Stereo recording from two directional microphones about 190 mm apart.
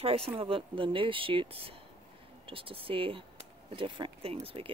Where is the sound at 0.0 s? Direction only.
30° right (ahead or behind).